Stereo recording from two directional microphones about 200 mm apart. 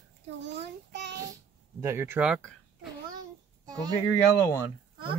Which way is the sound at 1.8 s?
10° right (ahead or behind).